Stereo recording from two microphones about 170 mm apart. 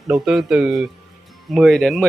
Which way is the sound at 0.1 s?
Centre (ahead or behind).